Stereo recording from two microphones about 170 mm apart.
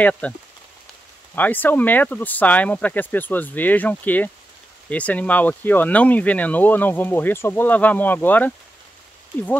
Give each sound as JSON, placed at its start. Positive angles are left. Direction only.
{"t": 0.0, "sound": "speech", "side_deg": 5}
{"t": 1.3, "sound": "speech", "side_deg": 10}